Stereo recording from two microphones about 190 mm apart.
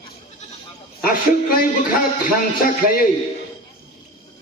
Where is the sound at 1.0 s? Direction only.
45° left (ahead or behind).